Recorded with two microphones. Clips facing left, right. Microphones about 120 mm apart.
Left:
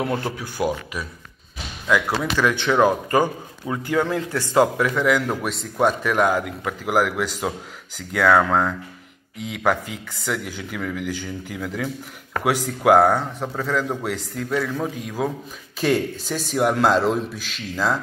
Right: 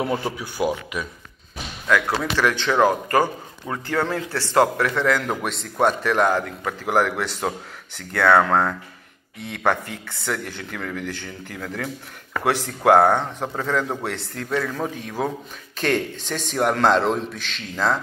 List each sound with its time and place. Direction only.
0.0 s a man's voice: 5° right (ahead or behind)
1.9 s a man's voice: 10° left (ahead or behind)